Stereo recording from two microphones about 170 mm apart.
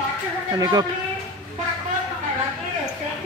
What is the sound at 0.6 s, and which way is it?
Speech, 20° right (ahead or behind).